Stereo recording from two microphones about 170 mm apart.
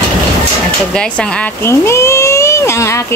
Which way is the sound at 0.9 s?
5° left (ahead or behind).